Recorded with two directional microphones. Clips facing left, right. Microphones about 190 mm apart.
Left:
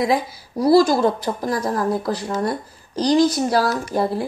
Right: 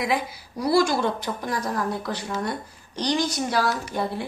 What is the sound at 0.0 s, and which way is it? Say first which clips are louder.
Speech: left 6 dB; 35° left (ahead or behind).